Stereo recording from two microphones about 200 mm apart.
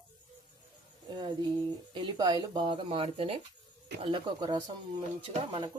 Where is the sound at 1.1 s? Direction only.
20° right (ahead or behind).